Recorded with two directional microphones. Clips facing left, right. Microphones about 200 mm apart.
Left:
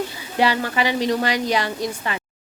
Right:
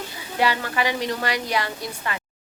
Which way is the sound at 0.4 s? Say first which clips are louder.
Left 3 dB; 20° left (ahead or behind).